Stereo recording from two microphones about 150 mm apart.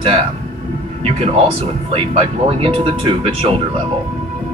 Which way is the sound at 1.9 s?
40° right (ahead or behind).